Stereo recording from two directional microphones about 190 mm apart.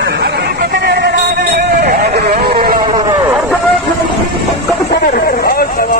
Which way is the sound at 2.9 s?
25° right (ahead or behind).